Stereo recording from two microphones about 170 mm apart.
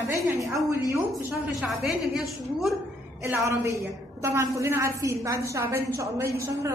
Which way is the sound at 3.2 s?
15° right (ahead or behind).